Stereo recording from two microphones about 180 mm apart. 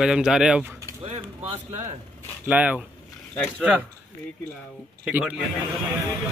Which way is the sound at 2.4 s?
5° right (ahead or behind).